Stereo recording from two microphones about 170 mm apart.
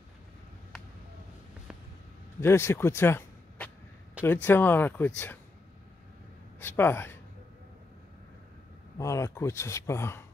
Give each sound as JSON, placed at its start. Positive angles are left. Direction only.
{"t": 2.4, "sound": "speech", "side_deg": 15}
{"t": 6.6, "sound": "speech", "side_deg": 15}
{"t": 8.9, "sound": "speech", "side_deg": 15}